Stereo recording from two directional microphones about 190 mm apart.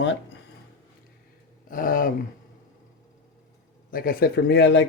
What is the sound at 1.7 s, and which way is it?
Speech, 45° left (ahead or behind).